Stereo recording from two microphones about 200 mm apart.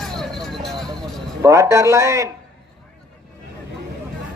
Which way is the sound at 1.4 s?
15° right (ahead or behind).